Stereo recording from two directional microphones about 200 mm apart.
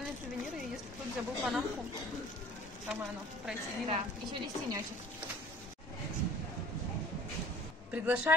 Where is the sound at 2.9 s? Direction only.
5° right (ahead or behind).